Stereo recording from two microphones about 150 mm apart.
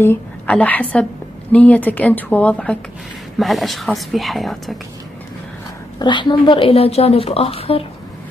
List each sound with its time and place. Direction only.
0.0 s a woman's voice: 10° left (ahead or behind)
5.9 s a woman's voice: 30° left (ahead or behind)